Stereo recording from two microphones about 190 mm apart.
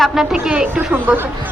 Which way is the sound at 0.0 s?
Centre (ahead or behind).